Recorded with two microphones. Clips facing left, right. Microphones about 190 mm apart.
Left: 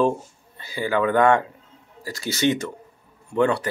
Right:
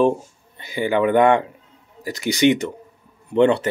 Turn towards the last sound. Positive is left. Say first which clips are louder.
# right 5 dB
turn(degrees=-25)  # may be behind; listen again after turning